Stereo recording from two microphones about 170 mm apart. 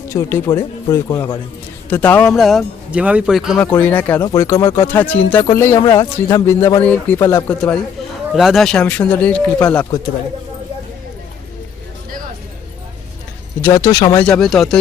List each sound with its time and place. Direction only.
0.1 s speech: 15° left (ahead or behind)
1.9 s speech: 10° left (ahead or behind)
3.8 s speech: 10° left (ahead or behind)
5.8 s speech: 25° left (ahead or behind); by 9.8 s 10° left (ahead or behind)
13.6 s speech: 15° left (ahead or behind)
14.3 s speech: 5° left (ahead or behind)